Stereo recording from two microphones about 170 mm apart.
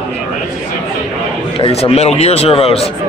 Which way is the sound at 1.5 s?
35° left (ahead or behind).